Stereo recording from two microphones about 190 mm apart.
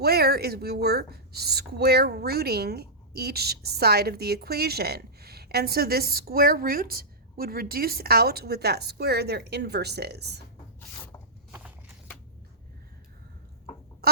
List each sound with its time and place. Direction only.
0.0 s a woman's voice: 55° right (ahead or behind)